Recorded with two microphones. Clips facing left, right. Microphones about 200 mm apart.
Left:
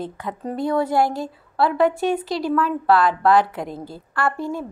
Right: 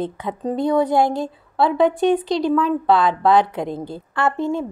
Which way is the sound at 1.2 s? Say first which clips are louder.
Right 2 dB; 20° right (ahead or behind).